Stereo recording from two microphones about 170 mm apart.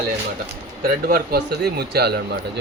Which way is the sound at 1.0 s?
65° right (ahead or behind).